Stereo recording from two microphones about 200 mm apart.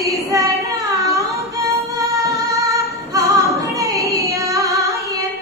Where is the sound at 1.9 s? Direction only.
15° right (ahead or behind).